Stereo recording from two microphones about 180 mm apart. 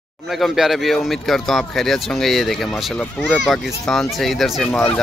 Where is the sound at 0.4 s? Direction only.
Centre (ahead or behind).